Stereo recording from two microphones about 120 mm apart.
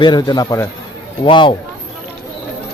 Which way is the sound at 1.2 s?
45° left (ahead or behind).